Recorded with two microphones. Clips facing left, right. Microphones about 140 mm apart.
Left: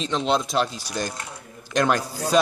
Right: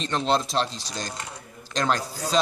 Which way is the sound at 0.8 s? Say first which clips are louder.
Left 5 dB; 55° left (ahead or behind).